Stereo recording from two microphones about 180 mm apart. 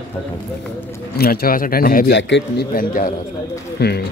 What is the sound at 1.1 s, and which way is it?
Speech, 60° left (ahead or behind).